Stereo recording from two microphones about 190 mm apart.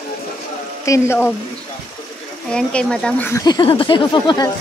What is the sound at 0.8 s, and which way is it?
Speech, 15° left (ahead or behind).